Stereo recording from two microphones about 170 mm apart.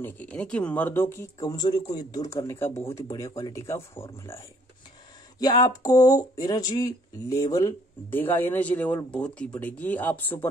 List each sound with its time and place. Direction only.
0.0 s speech: 10° left (ahead or behind)
5.4 s speech: 25° left (ahead or behind)